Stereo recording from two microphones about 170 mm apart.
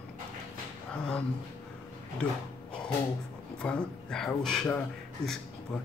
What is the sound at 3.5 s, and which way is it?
Speech, 5° left (ahead or behind).